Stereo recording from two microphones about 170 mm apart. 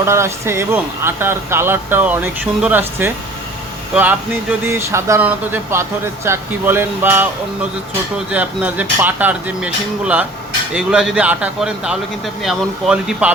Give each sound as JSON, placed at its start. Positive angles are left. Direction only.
{"t": 0.0, "sound": "speech", "side_deg": -15}
{"t": 8.3, "sound": "speech", "side_deg": -10}